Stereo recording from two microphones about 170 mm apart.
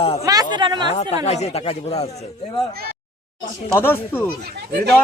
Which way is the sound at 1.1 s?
40° left (ahead or behind).